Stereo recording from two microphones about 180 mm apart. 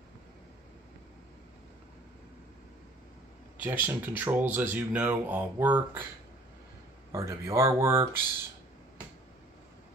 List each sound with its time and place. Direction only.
3.5 s speech: 10° right (ahead or behind)
7.1 s speech: 15° right (ahead or behind)